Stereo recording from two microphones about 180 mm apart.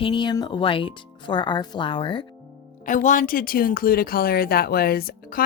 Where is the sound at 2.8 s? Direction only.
45° left (ahead or behind).